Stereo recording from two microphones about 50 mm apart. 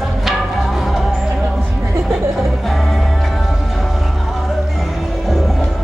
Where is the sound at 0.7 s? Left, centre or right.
Centre.